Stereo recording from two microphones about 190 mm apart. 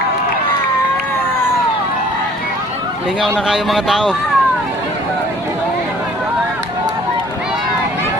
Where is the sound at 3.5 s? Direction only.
Centre (ahead or behind).